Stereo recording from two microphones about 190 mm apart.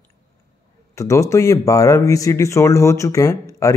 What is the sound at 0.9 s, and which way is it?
Speech, 15° left (ahead or behind).